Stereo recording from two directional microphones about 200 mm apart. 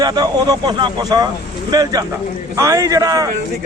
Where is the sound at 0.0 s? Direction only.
20° right (ahead or behind).